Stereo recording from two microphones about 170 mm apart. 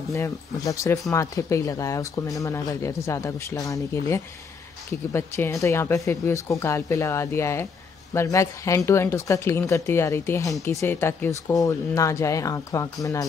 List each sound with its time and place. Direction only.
0.1 s speech: 20° left (ahead or behind)